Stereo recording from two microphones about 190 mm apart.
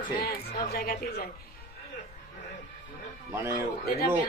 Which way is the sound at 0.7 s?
55° left (ahead or behind).